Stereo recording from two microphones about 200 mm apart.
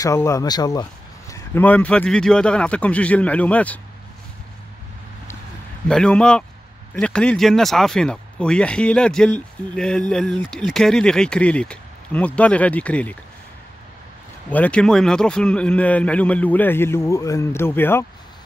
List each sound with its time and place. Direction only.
0.0 s a man's voice: 15° left (ahead or behind)
5.9 s speech: 5° left (ahead or behind)
14.5 s a man's voice: 5° left (ahead or behind)